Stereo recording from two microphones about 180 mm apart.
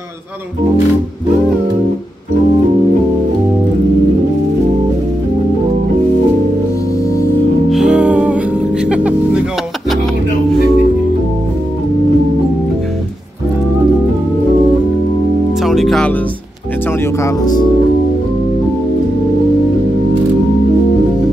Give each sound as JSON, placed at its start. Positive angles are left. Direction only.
{"t": 7.7, "sound": "music", "side_deg": -5}
{"t": 15.6, "sound": "music", "side_deg": 0}
{"t": 17.2, "sound": "music", "side_deg": 20}